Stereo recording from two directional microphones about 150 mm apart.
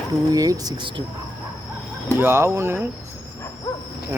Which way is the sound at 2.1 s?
15° right (ahead or behind).